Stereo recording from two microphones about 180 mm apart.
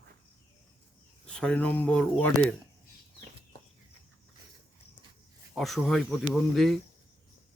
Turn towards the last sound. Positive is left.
turn(degrees=0)  # may be behind; listen again after turning